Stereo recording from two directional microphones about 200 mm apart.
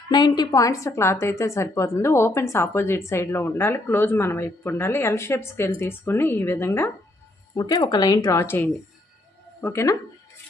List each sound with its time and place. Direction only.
0.1 s speech: 20° left (ahead or behind)